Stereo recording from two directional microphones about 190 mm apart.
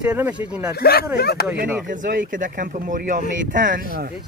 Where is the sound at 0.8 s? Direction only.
55° left (ahead or behind).